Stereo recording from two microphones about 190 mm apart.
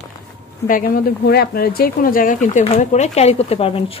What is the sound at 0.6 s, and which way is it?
Speech, 45° left (ahead or behind).